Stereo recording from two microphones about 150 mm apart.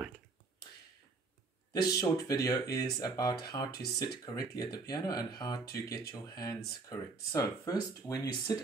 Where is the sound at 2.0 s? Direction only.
25° left (ahead or behind).